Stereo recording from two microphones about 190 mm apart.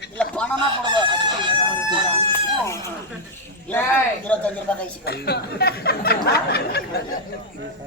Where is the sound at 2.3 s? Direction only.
15° left (ahead or behind).